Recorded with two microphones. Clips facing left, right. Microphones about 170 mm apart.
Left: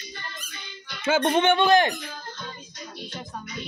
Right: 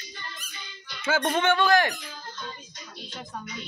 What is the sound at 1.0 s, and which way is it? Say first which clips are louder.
Speech: left 3 dB; 20° left (ahead or behind).